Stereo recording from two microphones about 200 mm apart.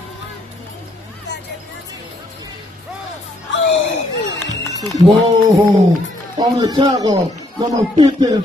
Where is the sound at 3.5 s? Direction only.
65° left (ahead or behind).